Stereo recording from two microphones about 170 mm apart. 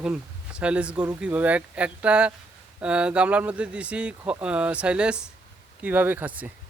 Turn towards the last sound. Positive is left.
turn(degrees=-10)  # may be behind; listen again after turning